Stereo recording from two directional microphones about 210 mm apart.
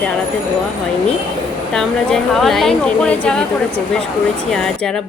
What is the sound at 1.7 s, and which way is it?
A woman's voice, centre (ahead or behind).